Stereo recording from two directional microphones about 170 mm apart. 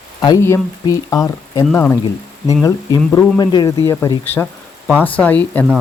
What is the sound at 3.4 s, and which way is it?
Speech, 25° left (ahead or behind).